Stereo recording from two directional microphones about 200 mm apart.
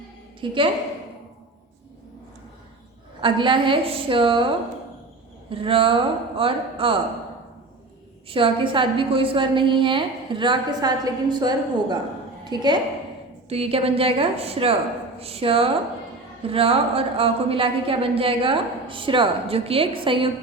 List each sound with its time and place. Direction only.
0.4 s speech: 25° right (ahead or behind)
3.2 s speech: 25° right (ahead or behind)
8.3 s speech: 25° right (ahead or behind)